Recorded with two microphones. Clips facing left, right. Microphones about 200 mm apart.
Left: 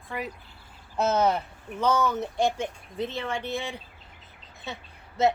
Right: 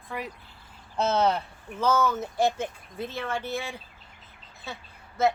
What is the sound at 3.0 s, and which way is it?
Speech, 20° left (ahead or behind).